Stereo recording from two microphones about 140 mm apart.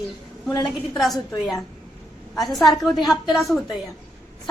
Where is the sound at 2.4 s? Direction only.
Centre (ahead or behind).